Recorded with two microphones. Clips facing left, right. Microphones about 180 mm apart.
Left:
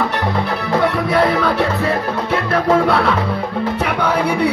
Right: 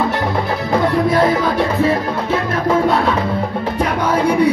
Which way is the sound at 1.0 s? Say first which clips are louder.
Right 1 dB; 65° left (ahead or behind).